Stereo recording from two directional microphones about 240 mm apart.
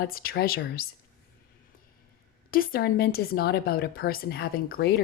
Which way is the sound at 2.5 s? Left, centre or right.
Left.